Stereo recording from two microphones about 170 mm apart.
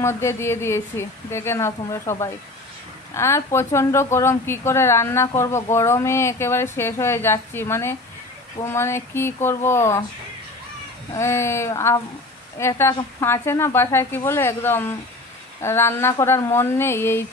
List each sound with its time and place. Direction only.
0.0 s a woman's voice: 15° left (ahead or behind)
11.1 s a woman's voice: 15° left (ahead or behind)